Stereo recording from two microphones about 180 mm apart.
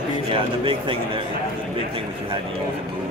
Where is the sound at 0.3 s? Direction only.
30° right (ahead or behind).